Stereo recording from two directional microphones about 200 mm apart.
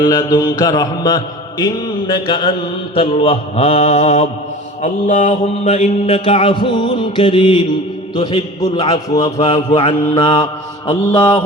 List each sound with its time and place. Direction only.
0.0 s mantra: 20° left (ahead or behind)
9.0 s a sound: 15° left (ahead or behind)
9.7 s mantra: 25° left (ahead or behind)